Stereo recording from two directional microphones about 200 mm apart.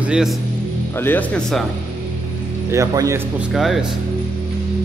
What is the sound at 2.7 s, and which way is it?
Speech, 15° right (ahead or behind).